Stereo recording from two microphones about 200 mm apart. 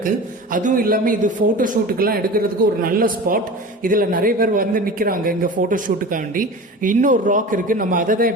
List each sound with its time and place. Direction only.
0.5 s speech: 40° right (ahead or behind)